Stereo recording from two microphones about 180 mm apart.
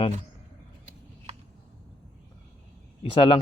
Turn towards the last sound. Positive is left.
turn(degrees=30)  # may be behind; listen again after turning